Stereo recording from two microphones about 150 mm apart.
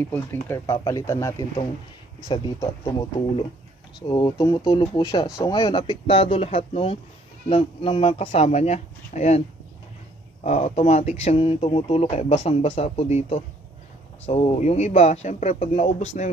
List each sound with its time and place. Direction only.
0.0 s speech: 15° left (ahead or behind); by 9.4 s 50° left (ahead or behind)
10.4 s speech: 50° left (ahead or behind)